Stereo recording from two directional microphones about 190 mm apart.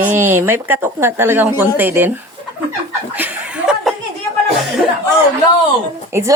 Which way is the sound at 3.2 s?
5° right (ahead or behind).